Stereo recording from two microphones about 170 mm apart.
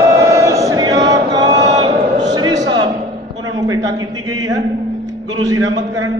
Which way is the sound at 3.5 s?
20° right (ahead or behind).